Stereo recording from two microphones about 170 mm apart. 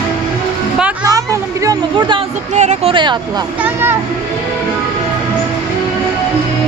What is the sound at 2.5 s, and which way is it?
Speech, 40° right (ahead or behind).